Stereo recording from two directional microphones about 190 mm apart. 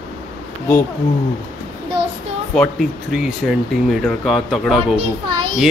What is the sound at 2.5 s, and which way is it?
A man's voice, centre (ahead or behind).